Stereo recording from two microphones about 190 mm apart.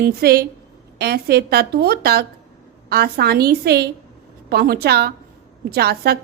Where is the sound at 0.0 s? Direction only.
55° right (ahead or behind).